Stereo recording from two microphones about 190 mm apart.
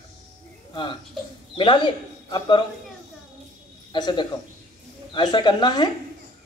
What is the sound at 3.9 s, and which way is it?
A man's voice, 20° left (ahead or behind).